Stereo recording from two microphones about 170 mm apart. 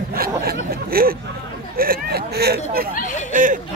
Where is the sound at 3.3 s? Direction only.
50° right (ahead or behind).